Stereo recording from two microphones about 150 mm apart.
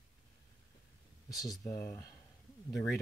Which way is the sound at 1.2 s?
25° left (ahead or behind).